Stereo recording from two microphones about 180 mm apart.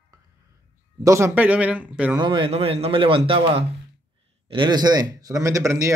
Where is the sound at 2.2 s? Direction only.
30° right (ahead or behind).